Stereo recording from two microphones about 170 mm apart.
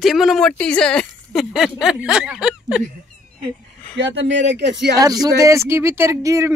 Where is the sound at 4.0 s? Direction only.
90° right.